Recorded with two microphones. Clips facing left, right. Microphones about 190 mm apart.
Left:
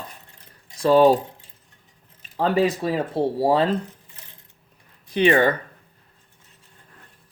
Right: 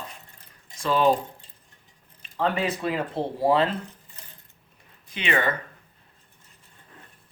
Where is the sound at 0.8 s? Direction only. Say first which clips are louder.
Left 8 dB; 35° left (ahead or behind).